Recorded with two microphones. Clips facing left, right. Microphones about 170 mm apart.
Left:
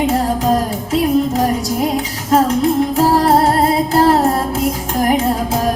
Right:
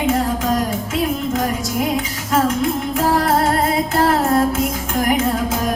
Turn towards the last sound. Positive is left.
turn(degrees=35)  # may be behind; listen again after turning